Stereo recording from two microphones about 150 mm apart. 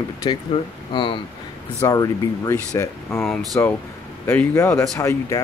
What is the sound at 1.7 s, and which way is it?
Speech, 20° left (ahead or behind).